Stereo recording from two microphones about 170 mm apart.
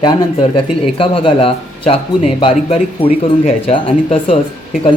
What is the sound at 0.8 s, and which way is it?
Speech, 30° left (ahead or behind).